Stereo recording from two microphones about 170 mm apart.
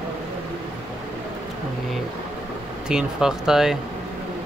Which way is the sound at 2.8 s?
5° right (ahead or behind).